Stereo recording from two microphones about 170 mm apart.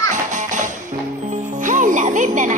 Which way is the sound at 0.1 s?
45° right (ahead or behind).